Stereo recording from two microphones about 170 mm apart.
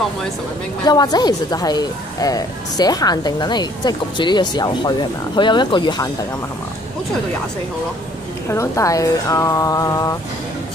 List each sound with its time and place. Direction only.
0.8 s a woman's voice: 25° left (ahead or behind)
8.5 s a woman's voice: 15° left (ahead or behind)